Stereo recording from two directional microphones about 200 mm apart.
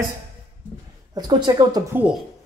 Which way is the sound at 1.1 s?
20° right (ahead or behind).